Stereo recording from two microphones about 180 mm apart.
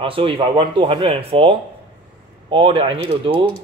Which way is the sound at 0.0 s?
30° right (ahead or behind).